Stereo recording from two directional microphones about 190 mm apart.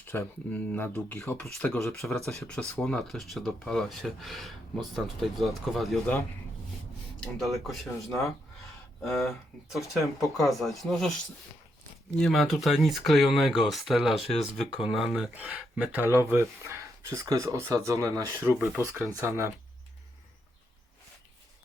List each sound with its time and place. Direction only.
0.0 s speech: 10° left (ahead or behind)
7.2 s speech: centre (ahead or behind)
9.0 s speech: 10° left (ahead or behind)
9.6 s speech: centre (ahead or behind)
10.0 s speech: 15° left (ahead or behind)
10.5 s speech: centre (ahead or behind)
12.2 s speech: centre (ahead or behind)